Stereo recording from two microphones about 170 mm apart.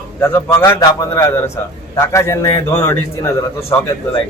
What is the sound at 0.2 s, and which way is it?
A man's voice, 15° left (ahead or behind).